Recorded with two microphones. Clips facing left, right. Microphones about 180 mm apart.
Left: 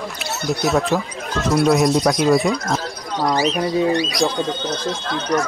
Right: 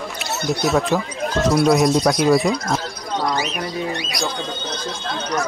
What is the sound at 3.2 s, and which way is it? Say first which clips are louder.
Speech: left 7 dB; 35° left (ahead or behind).